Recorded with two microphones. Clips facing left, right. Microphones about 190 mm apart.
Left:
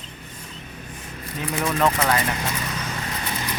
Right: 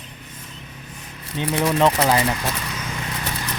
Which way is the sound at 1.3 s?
30° right (ahead or behind).